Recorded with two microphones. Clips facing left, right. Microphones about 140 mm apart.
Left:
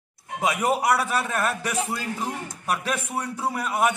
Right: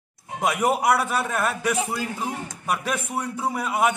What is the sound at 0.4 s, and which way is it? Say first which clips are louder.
A man's voice: right 1 dB; centre (ahead or behind).